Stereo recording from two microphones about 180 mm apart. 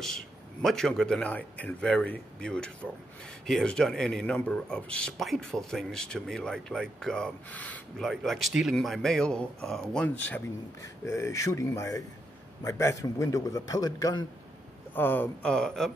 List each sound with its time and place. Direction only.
0.0 s a man's voice: centre (ahead or behind); by 14.2 s 20° left (ahead or behind)
15.0 s a man's voice: 10° left (ahead or behind)